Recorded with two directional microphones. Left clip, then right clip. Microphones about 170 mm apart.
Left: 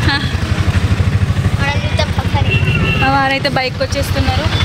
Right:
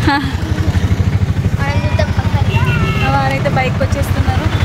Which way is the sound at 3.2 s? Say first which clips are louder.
Left 2 dB; 65° left (ahead or behind).